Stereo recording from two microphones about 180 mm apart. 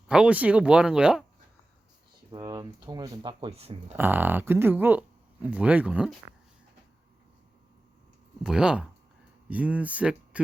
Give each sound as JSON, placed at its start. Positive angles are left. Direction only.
{"t": 0.1, "sound": "speech", "side_deg": -5}
{"t": 2.3, "sound": "speech", "side_deg": -20}
{"t": 3.9, "sound": "speech", "side_deg": -10}
{"t": 8.4, "sound": "speech", "side_deg": -5}